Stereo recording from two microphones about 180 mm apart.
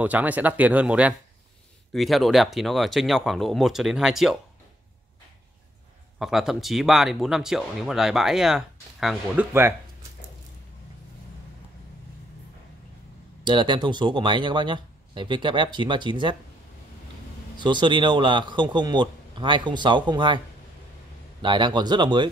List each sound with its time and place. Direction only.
0.0 s speech: 10° right (ahead or behind)
6.1 s speech: centre (ahead or behind)
13.4 s speech: 25° right (ahead or behind)
17.6 s speech: 25° right (ahead or behind)
21.4 s speech: 25° right (ahead or behind)